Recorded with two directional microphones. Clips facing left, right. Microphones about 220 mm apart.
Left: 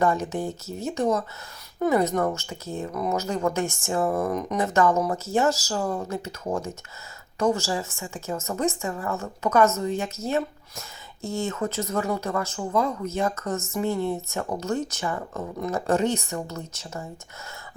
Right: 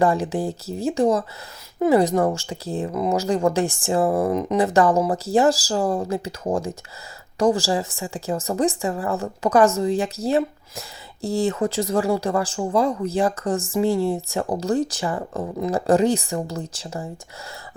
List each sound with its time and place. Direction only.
0.0 s speech: 30° right (ahead or behind)